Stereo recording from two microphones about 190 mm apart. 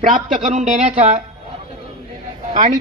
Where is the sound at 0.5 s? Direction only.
40° right (ahead or behind).